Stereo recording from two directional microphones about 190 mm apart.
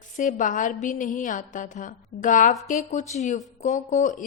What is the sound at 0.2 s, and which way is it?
A woman's voice, 40° left (ahead or behind).